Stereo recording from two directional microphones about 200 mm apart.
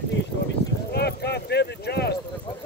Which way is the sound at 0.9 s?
55° left (ahead or behind).